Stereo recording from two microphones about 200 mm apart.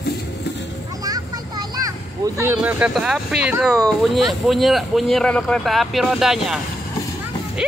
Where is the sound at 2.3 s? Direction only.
10° right (ahead or behind).